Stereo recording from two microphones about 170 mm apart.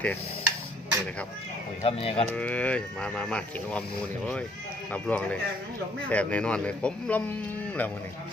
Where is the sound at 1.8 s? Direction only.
35° left (ahead or behind).